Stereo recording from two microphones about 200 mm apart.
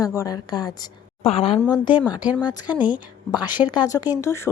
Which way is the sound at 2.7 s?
5° right (ahead or behind).